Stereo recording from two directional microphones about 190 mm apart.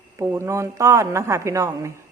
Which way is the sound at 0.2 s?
15° right (ahead or behind).